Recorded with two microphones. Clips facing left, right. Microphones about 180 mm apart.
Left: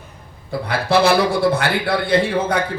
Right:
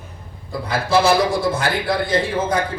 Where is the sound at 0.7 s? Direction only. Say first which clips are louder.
Left 1 dB; 65° left (ahead or behind).